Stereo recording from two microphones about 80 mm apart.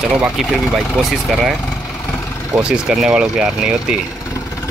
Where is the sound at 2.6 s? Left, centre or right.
Centre.